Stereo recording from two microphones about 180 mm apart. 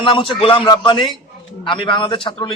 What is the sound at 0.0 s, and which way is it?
A man's voice, 25° left (ahead or behind).